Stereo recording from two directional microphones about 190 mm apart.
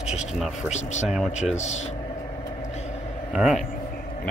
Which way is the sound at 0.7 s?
40° left (ahead or behind).